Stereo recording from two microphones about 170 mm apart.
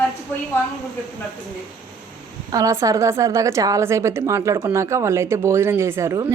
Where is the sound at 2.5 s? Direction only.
20° right (ahead or behind).